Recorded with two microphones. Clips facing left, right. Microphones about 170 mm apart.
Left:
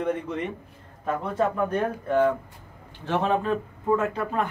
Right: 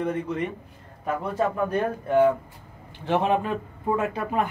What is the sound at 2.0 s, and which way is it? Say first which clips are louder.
A man's voice: right 3 dB; 10° right (ahead or behind).